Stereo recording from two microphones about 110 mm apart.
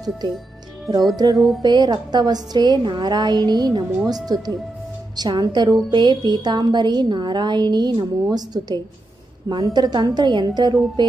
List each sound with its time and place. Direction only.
1.1 s a woman's voice: 35° right (ahead or behind)